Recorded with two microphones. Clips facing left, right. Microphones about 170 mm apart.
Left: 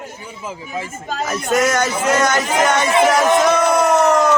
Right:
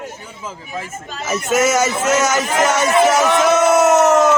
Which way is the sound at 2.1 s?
5° right (ahead or behind).